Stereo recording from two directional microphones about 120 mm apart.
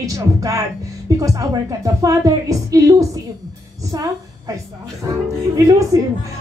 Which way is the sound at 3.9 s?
30° right (ahead or behind).